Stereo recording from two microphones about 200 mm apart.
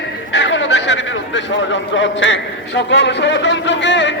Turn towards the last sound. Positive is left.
turn(degrees=65)  # may be behind; listen again after turning